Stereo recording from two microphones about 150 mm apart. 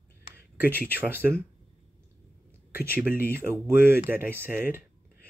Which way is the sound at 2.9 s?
10° right (ahead or behind).